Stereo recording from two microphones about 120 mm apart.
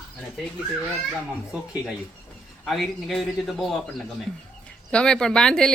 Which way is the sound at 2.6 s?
Centre (ahead or behind).